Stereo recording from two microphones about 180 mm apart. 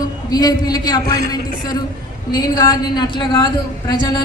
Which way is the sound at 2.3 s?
25° left (ahead or behind).